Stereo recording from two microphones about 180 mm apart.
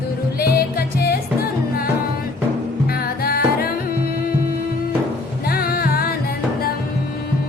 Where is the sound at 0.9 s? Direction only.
60° left (ahead or behind).